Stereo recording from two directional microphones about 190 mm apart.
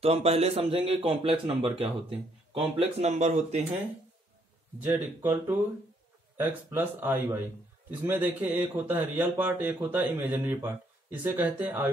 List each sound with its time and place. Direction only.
0.0 s a man's voice: 30° right (ahead or behind)
4.7 s speech: 10° right (ahead or behind)